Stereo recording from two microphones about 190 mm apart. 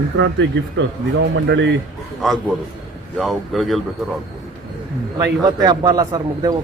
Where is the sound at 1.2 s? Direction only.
65° right (ahead or behind).